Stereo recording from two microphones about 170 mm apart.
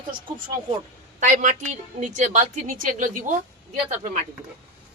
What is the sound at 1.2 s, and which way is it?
A woman's voice, 50° right (ahead or behind).